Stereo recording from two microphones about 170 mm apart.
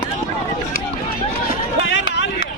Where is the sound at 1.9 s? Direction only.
90° left.